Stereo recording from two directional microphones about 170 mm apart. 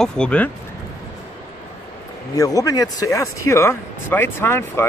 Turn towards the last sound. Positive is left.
turn(degrees=15)  # may be behind; listen again after turning